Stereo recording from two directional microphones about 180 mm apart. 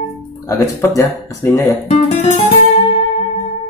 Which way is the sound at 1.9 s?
40° left (ahead or behind).